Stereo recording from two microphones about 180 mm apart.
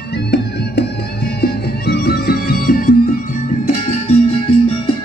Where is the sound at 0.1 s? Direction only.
65° left (ahead or behind).